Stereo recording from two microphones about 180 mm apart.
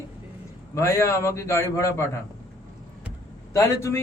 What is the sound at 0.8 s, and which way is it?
Speech, 15° left (ahead or behind).